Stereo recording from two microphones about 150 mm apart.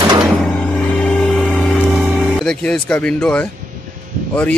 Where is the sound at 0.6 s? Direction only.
5° left (ahead or behind).